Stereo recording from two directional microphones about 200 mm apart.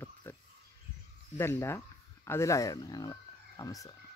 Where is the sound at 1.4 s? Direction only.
10° left (ahead or behind).